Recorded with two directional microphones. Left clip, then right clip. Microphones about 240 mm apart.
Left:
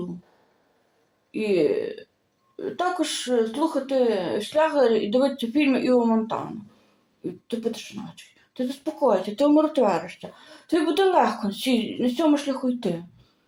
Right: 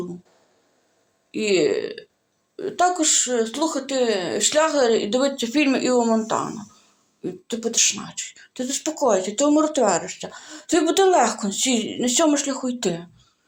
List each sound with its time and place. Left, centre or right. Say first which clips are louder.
1.3 s speech: right 2 dB; right